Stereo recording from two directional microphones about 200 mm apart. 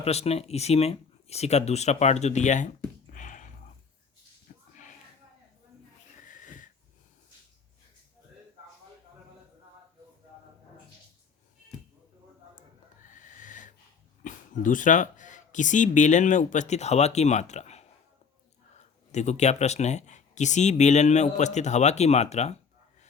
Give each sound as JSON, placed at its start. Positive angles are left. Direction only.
{"t": 0.0, "sound": "speech", "side_deg": 30}
{"t": 3.1, "sound": "a sound", "side_deg": 40}
{"t": 6.2, "sound": "wheeze", "side_deg": 40}
{"t": 13.1, "sound": "a sound", "side_deg": 40}
{"t": 14.3, "sound": "speech", "side_deg": 40}
{"t": 19.1, "sound": "speech", "side_deg": 35}